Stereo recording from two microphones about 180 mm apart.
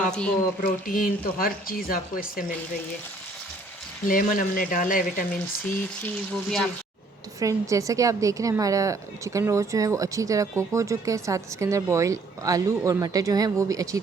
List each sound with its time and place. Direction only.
0.6 s speech: 50° left (ahead or behind)
4.0 s speech: 50° left (ahead or behind)
6.0 s speech: centre (ahead or behind)
7.3 s a woman's voice: 20° right (ahead or behind)